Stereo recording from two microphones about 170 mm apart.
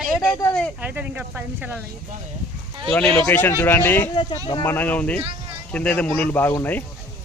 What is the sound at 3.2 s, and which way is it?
Speech, 10° left (ahead or behind).